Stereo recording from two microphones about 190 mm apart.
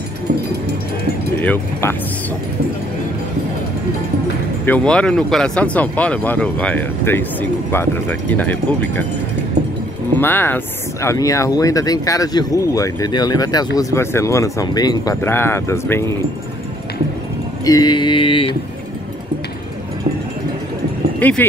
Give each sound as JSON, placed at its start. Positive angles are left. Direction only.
{"t": 0.3, "sound": "a sound", "side_deg": -60}
{"t": 1.4, "sound": "speech", "side_deg": 10}
{"t": 4.6, "sound": "speech", "side_deg": 5}
{"t": 10.1, "sound": "speech", "side_deg": 10}
{"t": 17.6, "sound": "mantra", "side_deg": 20}
{"t": 21.2, "sound": "speech", "side_deg": 10}